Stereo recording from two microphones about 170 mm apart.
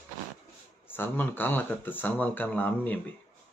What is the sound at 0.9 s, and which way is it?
Speech, 10° left (ahead or behind).